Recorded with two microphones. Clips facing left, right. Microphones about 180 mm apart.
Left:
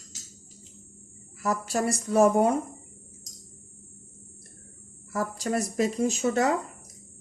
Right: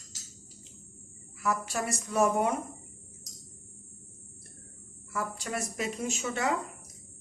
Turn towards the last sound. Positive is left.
turn(degrees=40)  # may be behind; listen again after turning